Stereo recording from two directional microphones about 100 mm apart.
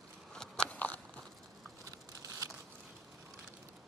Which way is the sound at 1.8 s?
35° right (ahead or behind).